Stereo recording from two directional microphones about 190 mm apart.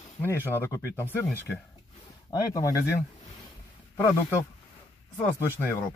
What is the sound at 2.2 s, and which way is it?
Speech, 15° left (ahead or behind).